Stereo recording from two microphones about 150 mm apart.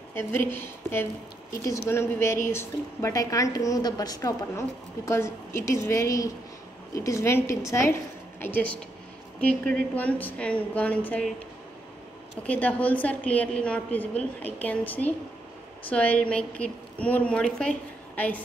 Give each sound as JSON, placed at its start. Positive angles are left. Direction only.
{"t": 0.1, "sound": "a woman's voice", "side_deg": 15}
{"t": 12.4, "sound": "a woman's voice", "side_deg": 10}